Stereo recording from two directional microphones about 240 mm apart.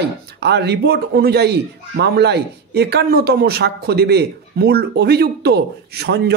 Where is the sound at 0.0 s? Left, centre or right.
Right.